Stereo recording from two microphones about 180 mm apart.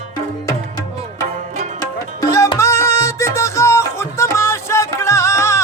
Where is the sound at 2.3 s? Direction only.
20° left (ahead or behind).